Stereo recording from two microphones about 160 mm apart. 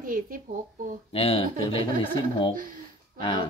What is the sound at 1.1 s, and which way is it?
Speech, 35° left (ahead or behind).